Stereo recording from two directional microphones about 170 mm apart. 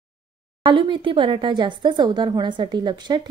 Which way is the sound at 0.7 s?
30° right (ahead or behind).